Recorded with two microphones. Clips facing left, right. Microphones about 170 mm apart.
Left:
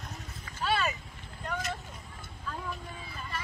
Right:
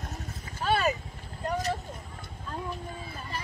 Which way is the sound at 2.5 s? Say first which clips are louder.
Right 3 dB; 35° right (ahead or behind).